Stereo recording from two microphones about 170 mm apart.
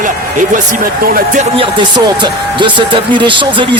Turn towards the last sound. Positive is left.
turn(degrees=-30)  # may be behind; listen again after turning